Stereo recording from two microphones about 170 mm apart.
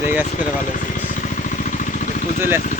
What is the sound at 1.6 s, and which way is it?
Vehicle, 45° left (ahead or behind).